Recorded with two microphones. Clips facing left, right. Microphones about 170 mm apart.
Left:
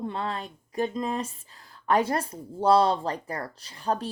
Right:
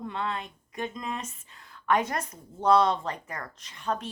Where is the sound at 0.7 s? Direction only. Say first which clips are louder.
Left 6 dB; 35° left (ahead or behind).